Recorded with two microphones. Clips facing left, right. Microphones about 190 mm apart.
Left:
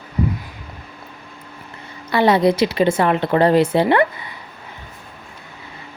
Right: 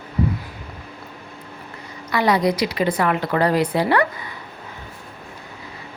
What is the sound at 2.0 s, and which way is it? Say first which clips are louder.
Speech: left 4 dB; 30° left (ahead or behind).